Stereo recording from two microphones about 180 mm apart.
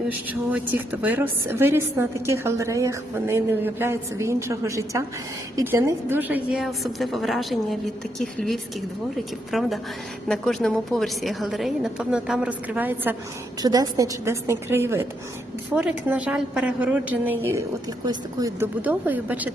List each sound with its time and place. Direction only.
0.3 s a woman's voice: 10° right (ahead or behind)
13.6 s a woman's voice: 20° right (ahead or behind)
18.8 s a woman's voice: 10° right (ahead or behind)